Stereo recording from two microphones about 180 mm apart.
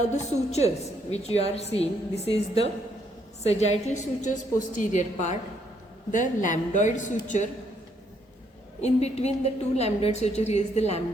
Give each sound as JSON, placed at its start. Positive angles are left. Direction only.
{"t": 0.1, "sound": "a woman's voice", "side_deg": 35}
{"t": 8.8, "sound": "a woman's voice", "side_deg": 35}